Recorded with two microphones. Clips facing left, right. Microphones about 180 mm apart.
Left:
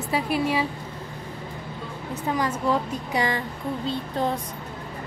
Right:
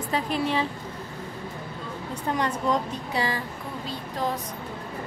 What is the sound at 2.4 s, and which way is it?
Speech, 5° left (ahead or behind).